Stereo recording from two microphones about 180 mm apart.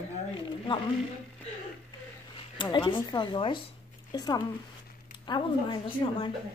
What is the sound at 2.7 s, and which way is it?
A woman's voice, 25° left (ahead or behind).